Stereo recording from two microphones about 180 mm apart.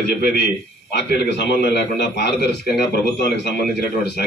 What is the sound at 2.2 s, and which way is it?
A man's voice, 60° left (ahead or behind).